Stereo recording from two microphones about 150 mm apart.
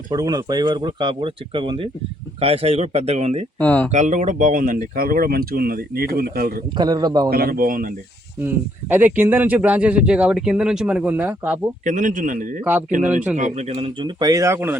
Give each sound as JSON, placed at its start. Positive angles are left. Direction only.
{"t": 0.1, "sound": "speech", "side_deg": -25}
{"t": 3.6, "sound": "speech", "side_deg": 10}
{"t": 3.9, "sound": "speech", "side_deg": -55}
{"t": 6.7, "sound": "speech", "side_deg": -25}
{"t": 7.3, "sound": "speech", "side_deg": -80}
{"t": 8.4, "sound": "a man's voice", "side_deg": -15}
{"t": 11.9, "sound": "a man's voice", "side_deg": -60}
{"t": 13.7, "sound": "speech", "side_deg": -30}